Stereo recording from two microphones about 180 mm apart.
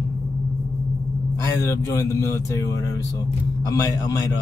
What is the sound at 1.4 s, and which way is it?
Speech, 15° left (ahead or behind).